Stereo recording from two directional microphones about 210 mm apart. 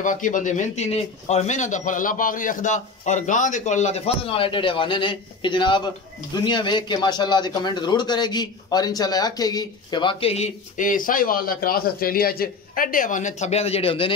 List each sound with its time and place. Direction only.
0.0 s a man's voice: 40° left (ahead or behind)